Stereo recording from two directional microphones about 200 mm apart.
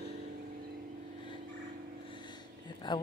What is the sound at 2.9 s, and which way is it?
Speech, 20° left (ahead or behind).